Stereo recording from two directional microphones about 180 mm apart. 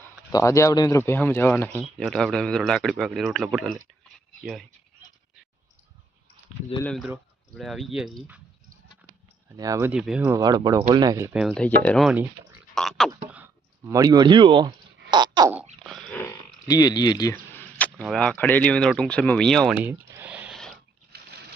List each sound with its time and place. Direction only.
0.0 s speech: 15° left (ahead or behind); by 3.8 s 5° right (ahead or behind)
6.8 s speech: centre (ahead or behind)
9.5 s speech: 20° right (ahead or behind)
9.9 s speech: 5° right (ahead or behind)
10.4 s speech: 20° right (ahead or behind)
11.3 s speech: 5° right (ahead or behind)
13.3 s speech: 10° right (ahead or behind)
15.1 s a sound: 25° right (ahead or behind)
15.8 s a sound: centre (ahead or behind)
16.6 s speech: 20° left (ahead or behind)
17.6 s a sound: 10° left (ahead or behind)
17.9 s speech: centre (ahead or behind)